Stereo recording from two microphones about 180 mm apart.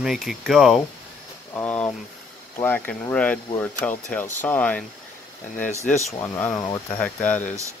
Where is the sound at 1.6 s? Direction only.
10° left (ahead or behind).